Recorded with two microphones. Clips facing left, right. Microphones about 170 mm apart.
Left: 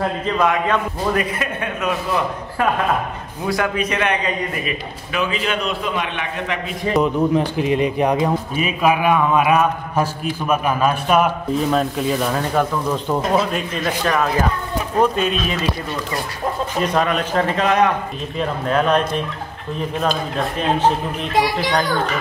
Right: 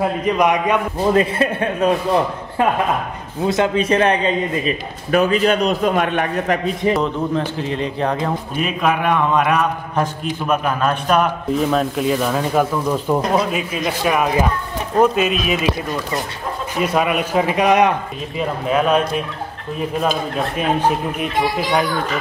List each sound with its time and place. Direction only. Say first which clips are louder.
0.2 s speech: right 2 dB; 15° right (ahead or behind)
1.1 s a man's voice: right 5 dB; 30° right (ahead or behind)
5.1 s a man's voice: right 7 dB; 45° right (ahead or behind)
6.9 s a man's voice: left 3 dB; 15° left (ahead or behind); by 15.7 s 5° right (ahead or behind)
16.8 s speech: right 2 dB; 10° right (ahead or behind)